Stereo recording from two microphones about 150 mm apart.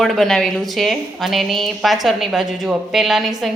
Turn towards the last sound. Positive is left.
turn(degrees=0)  # may be behind; listen again after turning